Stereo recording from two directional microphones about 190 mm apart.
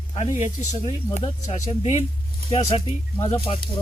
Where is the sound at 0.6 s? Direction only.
35° left (ahead or behind).